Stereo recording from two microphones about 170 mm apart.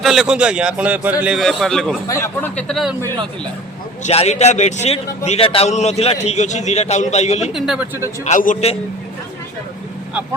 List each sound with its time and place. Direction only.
0.0 s a man's voice: centre (ahead or behind)
2.0 s speech: 15° left (ahead or behind)
2.6 s a man's voice: centre (ahead or behind)
4.0 s a man's voice: 40° left (ahead or behind)
7.5 s a man's voice: centre (ahead or behind)
8.2 s a man's voice: 50° left (ahead or behind)